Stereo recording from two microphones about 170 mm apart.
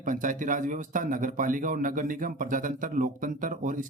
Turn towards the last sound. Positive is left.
turn(degrees=-50)  # may be behind; listen again after turning